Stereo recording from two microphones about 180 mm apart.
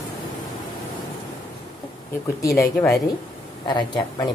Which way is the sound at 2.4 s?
15° left (ahead or behind).